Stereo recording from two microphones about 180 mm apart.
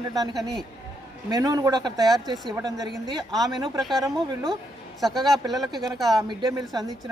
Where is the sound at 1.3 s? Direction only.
20° right (ahead or behind).